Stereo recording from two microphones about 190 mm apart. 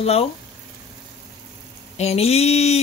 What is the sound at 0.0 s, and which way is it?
Speech, 30° left (ahead or behind).